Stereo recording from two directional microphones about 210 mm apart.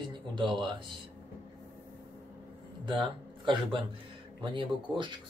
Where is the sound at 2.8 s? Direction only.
25° right (ahead or behind).